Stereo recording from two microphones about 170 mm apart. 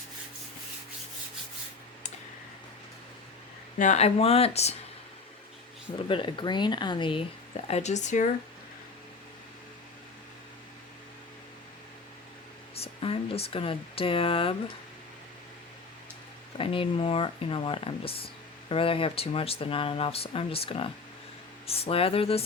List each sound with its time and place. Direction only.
3.8 s speech: 40° left (ahead or behind)
6.1 s speech: 30° left (ahead or behind)
7.7 s speech: 40° left (ahead or behind)
12.7 s speech: 35° left (ahead or behind)
16.6 s speech: 30° left (ahead or behind)